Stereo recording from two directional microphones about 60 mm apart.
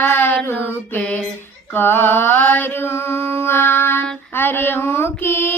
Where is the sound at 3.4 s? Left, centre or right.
Left.